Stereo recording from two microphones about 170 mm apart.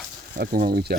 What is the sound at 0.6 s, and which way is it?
Speech, 65° right (ahead or behind).